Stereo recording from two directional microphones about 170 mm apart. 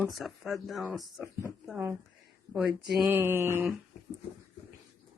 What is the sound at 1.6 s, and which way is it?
Speech, 10° right (ahead or behind).